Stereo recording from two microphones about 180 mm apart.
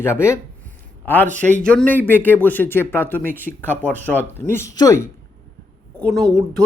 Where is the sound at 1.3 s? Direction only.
45° right (ahead or behind).